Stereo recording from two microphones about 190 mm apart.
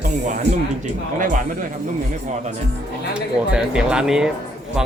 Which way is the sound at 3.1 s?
5° right (ahead or behind).